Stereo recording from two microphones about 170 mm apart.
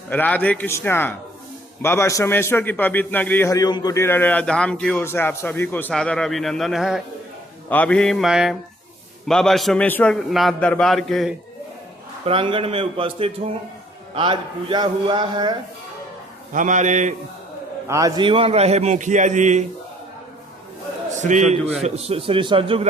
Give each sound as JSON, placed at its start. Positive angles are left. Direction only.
{"t": 0.1, "sound": "a man's voice", "side_deg": 10}
{"t": 7.7, "sound": "a man's voice", "side_deg": 10}
{"t": 12.2, "sound": "a man's voice", "side_deg": -30}
{"t": 16.5, "sound": "a man's voice", "side_deg": -50}
{"t": 17.8, "sound": "a man's voice", "side_deg": -20}
{"t": 21.1, "sound": "a man's voice", "side_deg": -45}